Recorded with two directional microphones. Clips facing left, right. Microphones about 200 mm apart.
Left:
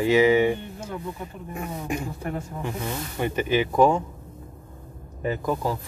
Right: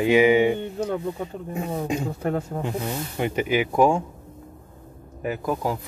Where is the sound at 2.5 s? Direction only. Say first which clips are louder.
Right 3 dB; 55° right (ahead or behind).